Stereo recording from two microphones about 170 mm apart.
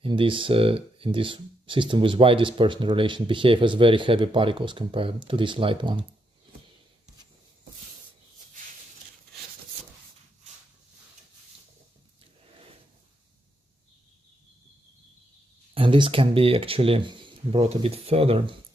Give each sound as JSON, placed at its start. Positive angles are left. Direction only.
{"t": 0.0, "sound": "speech", "side_deg": -30}
{"t": 15.7, "sound": "speech", "side_deg": -30}